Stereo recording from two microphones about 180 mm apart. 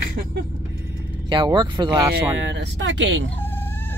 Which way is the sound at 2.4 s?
75° right (ahead or behind).